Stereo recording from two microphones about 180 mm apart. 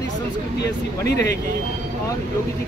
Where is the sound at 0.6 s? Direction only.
65° left (ahead or behind).